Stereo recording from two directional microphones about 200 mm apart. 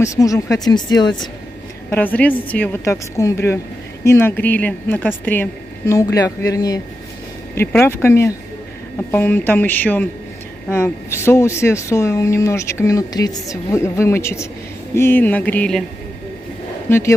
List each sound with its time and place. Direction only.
0.0 s speech: 15° left (ahead or behind)
1.9 s speech: 10° left (ahead or behind)
16.9 s speech: 10° left (ahead or behind)